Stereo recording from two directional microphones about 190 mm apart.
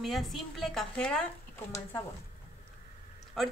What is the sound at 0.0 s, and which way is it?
Speech, centre (ahead or behind).